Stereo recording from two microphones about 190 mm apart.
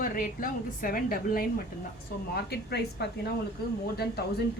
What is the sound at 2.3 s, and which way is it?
Speech, 60° left (ahead or behind).